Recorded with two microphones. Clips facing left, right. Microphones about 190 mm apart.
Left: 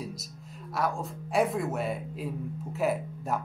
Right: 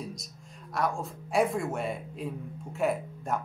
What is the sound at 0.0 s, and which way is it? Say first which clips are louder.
Speech: left 1 dB; centre (ahead or behind).